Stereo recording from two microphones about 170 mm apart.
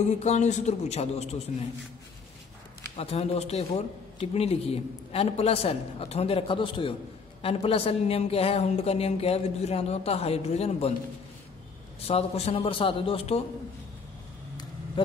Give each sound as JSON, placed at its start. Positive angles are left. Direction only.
{"t": 0.0, "sound": "speech", "side_deg": 40}
{"t": 3.0, "sound": "speech", "side_deg": 35}
{"t": 12.1, "sound": "speech", "side_deg": 35}
{"t": 15.0, "sound": "a sound", "side_deg": 30}